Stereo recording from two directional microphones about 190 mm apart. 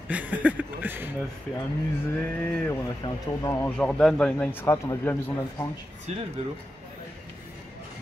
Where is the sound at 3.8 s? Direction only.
5° left (ahead or behind).